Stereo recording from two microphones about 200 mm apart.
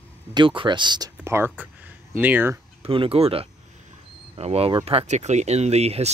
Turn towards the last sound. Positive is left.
turn(degrees=-30)  # may be behind; listen again after turning